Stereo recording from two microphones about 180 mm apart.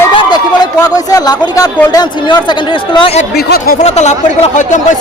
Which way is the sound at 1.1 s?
20° left (ahead or behind).